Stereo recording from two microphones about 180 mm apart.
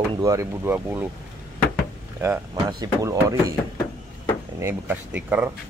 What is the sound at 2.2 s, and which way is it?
Speech, 15° right (ahead or behind).